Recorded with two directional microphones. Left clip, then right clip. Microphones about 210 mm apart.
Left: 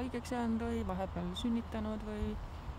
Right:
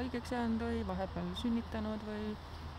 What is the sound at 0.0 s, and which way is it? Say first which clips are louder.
Speech: even; 5° left (ahead or behind).